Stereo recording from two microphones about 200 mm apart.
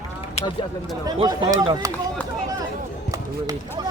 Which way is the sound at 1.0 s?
20° right (ahead or behind).